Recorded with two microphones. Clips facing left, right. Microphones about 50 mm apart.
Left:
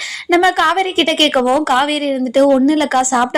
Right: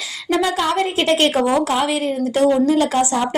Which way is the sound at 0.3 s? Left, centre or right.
Left.